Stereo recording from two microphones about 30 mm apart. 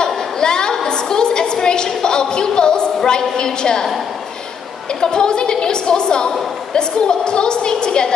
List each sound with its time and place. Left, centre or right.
0.0 s a sound: left
3.1 s a woman's voice: left
5.0 s a woman's voice: left